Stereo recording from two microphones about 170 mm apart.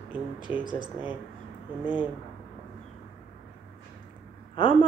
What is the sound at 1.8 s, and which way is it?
Speech, 10° right (ahead or behind).